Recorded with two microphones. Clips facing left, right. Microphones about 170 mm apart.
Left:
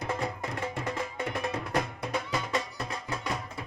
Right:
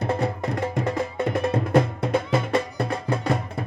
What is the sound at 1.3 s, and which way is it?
Music, 55° right (ahead or behind).